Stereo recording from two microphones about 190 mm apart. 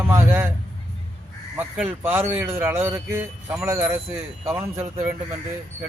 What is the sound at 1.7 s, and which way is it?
A man's voice, 10° right (ahead or behind).